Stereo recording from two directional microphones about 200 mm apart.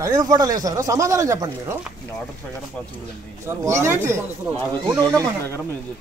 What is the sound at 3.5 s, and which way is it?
Speech, 15° right (ahead or behind).